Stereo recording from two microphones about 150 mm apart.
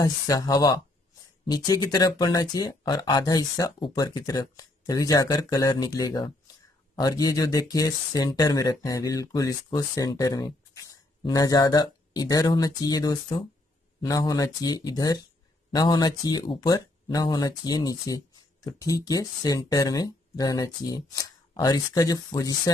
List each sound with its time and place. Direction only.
0.0 s speech: 25° left (ahead or behind)